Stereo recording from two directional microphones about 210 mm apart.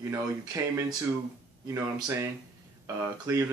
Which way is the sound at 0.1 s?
15° right (ahead or behind).